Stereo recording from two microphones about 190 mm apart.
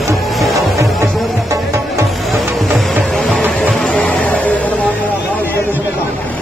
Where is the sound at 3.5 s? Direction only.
5° left (ahead or behind).